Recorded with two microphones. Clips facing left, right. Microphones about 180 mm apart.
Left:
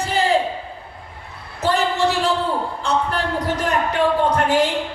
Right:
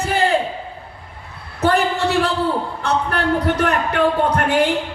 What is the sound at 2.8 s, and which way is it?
Speech, 60° right (ahead or behind).